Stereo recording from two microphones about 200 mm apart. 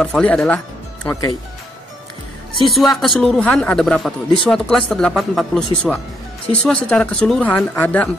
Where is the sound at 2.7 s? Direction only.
Centre (ahead or behind).